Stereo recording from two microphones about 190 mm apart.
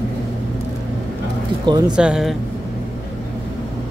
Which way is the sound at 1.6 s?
20° right (ahead or behind).